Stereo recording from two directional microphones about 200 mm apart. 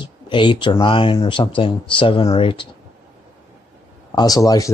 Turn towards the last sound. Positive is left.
turn(degrees=20)  # may be behind; listen again after turning